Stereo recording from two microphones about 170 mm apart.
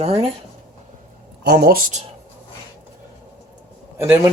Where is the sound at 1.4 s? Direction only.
70° right (ahead or behind); by 2.0 s 55° right (ahead or behind).